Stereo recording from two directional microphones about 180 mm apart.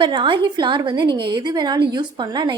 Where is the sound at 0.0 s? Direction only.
25° right (ahead or behind).